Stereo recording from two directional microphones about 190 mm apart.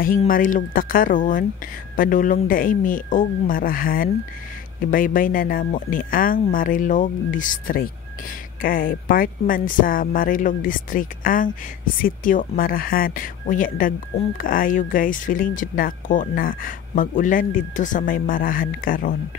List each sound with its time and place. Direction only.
0.3 s a woman's voice: 45° left (ahead or behind)